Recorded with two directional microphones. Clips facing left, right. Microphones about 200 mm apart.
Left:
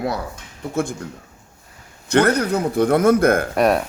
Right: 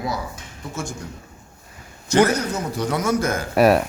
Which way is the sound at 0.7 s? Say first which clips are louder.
Left 8 dB; 60° left (ahead or behind).